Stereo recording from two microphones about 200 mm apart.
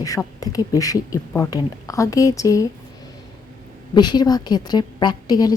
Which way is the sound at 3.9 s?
20° left (ahead or behind).